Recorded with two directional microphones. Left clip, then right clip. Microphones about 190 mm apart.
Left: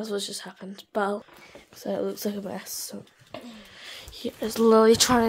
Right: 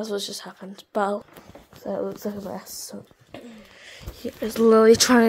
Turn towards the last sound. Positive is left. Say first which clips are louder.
# right 3 dB
turn(degrees=0)  # may be behind; listen again after turning